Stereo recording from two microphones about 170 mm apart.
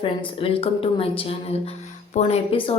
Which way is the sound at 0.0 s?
30° left (ahead or behind).